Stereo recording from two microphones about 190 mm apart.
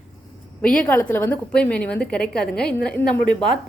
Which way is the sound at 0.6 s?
5° left (ahead or behind).